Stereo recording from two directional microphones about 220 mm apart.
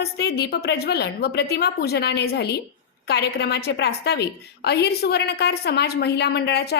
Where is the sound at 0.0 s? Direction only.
50° left (ahead or behind).